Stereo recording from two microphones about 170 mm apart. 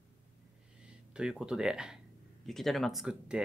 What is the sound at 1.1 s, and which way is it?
Speech, 5° right (ahead or behind).